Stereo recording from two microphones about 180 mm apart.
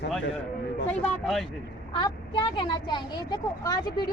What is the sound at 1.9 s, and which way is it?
Speech, 25° left (ahead or behind).